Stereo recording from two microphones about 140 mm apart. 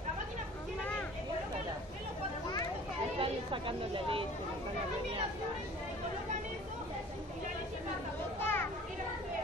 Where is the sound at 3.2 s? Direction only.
40° right (ahead or behind).